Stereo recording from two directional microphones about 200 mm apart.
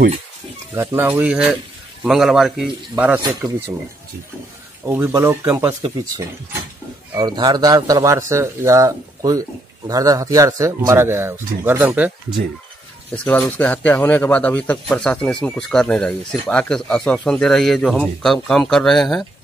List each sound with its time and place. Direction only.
0.7 s speech: 10° right (ahead or behind)
3.2 s speech: 20° right (ahead or behind)
4.8 s speech: 10° right (ahead or behind)
13.1 s speech: 5° left (ahead or behind)